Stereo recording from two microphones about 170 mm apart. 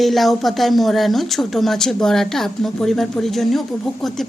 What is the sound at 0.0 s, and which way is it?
Speech, centre (ahead or behind).